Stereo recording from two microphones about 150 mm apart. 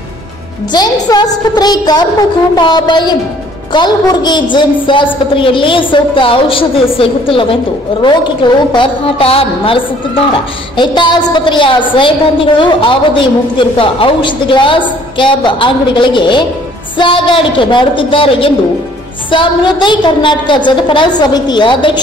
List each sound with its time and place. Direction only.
0.7 s a woman's voice: 25° left (ahead or behind)